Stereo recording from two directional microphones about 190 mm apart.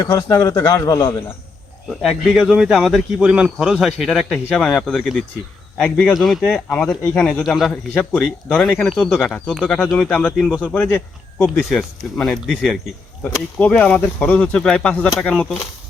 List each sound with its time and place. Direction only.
0.0 s a man's voice: 20° left (ahead or behind)
2.0 s a man's voice: centre (ahead or behind)